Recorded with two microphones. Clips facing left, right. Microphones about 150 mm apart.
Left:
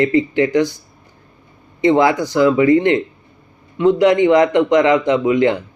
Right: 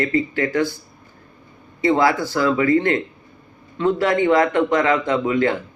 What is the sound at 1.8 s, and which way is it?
A man's voice, 20° left (ahead or behind).